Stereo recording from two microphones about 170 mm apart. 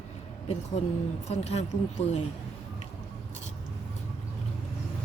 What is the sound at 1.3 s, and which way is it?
Speech, 40° left (ahead or behind).